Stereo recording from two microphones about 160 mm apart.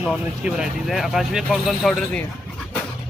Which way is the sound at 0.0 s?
5° right (ahead or behind).